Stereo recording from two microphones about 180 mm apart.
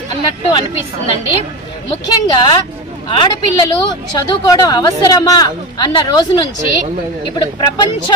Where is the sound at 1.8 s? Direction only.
25° left (ahead or behind).